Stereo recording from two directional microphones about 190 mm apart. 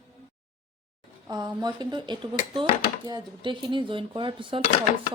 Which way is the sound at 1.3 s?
20° right (ahead or behind).